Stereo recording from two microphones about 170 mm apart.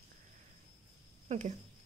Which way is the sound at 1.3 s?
45° right (ahead or behind).